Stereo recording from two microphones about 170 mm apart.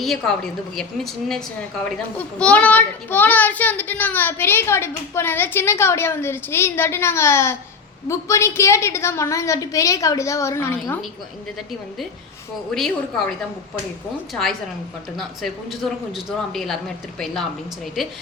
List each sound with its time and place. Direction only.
0.0 s a child's voice: centre (ahead or behind)
12.7 s speech: 5° left (ahead or behind)
15.1 s speech: centre (ahead or behind)